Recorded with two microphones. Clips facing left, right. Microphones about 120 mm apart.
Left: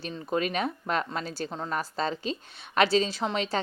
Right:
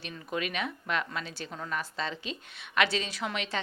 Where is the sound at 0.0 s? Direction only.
35° left (ahead or behind).